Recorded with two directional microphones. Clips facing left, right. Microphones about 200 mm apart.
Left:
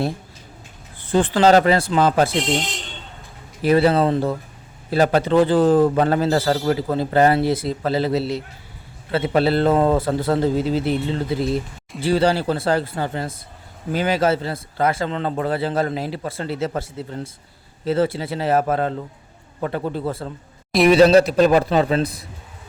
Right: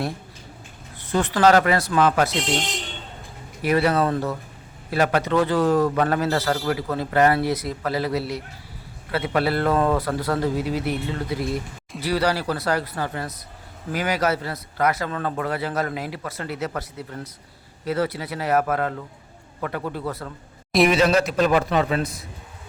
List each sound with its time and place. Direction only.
0.9 s a man's voice: 30° left (ahead or behind)
3.6 s a man's voice: 30° left (ahead or behind)